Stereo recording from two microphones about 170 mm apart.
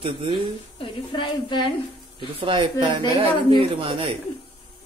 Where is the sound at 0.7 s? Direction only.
30° left (ahead or behind).